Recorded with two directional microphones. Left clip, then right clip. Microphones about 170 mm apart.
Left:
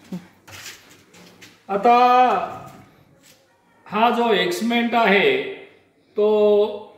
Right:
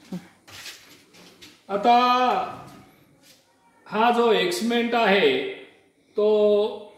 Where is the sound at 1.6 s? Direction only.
20° left (ahead or behind).